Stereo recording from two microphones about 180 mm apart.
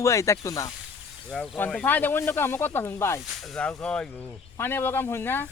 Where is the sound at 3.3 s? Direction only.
Centre (ahead or behind).